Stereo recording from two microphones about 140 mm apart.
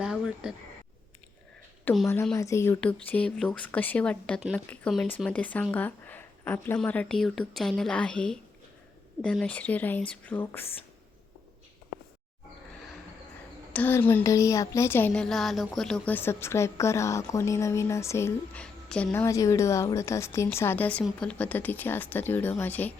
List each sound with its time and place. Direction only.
0.0 s a sound: 5° right (ahead or behind)
1.8 s a woman's voice: 5° left (ahead or behind)
2.3 s speech: 20° left (ahead or behind)
13.7 s speech: 15° left (ahead or behind)
16.1 s speech: 15° left (ahead or behind)
18.5 s a woman's voice: 5° left (ahead or behind)
19.1 s speech: 20° left (ahead or behind)